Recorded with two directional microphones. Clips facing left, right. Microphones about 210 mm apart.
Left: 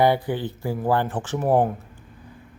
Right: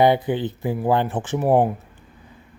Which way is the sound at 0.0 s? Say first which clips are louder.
Right 3 dB; 20° right (ahead or behind).